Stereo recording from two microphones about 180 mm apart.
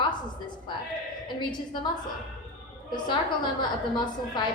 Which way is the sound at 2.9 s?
25° left (ahead or behind).